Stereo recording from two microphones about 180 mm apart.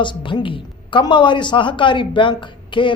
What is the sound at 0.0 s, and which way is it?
Speech, 25° left (ahead or behind).